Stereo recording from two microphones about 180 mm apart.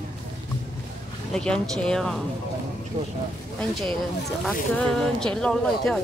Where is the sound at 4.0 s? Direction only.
Centre (ahead or behind).